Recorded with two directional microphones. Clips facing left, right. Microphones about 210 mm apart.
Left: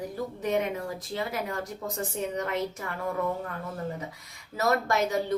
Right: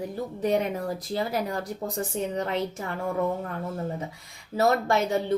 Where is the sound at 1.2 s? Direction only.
35° right (ahead or behind).